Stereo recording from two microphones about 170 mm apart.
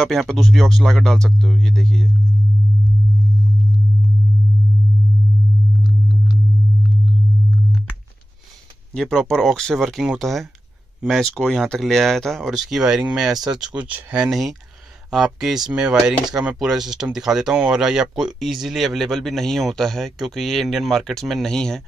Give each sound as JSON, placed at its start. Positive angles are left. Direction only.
{"t": 0.0, "sound": "speech", "side_deg": 0}
{"t": 8.9, "sound": "speech", "side_deg": 5}